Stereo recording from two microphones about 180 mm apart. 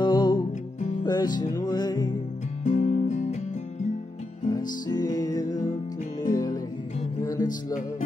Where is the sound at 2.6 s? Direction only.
40° left (ahead or behind).